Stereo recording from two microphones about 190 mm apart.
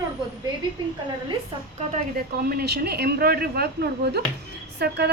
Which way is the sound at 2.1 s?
50° right (ahead or behind).